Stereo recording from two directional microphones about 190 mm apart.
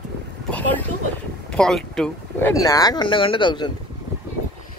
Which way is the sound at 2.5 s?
15° left (ahead or behind).